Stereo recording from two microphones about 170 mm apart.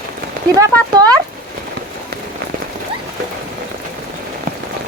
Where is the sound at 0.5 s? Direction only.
20° right (ahead or behind).